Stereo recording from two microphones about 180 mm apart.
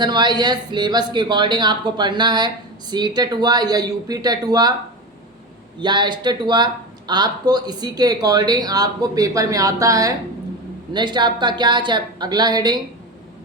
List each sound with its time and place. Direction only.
0.0 s speech: 25° right (ahead or behind)
5.8 s speech: 25° right (ahead or behind)